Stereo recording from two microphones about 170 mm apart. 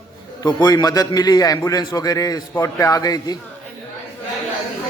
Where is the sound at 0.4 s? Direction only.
25° left (ahead or behind).